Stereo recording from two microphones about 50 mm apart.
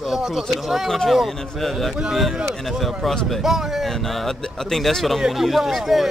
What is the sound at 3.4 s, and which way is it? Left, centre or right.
Speech, centre.